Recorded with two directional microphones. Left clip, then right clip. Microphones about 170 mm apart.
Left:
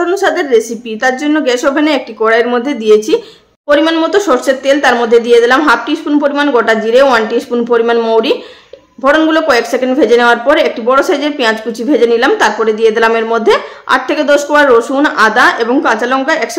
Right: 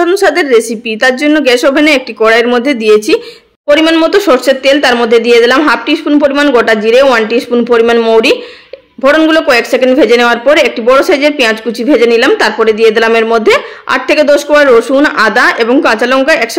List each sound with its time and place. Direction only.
0.0 s a woman's voice: 20° right (ahead or behind)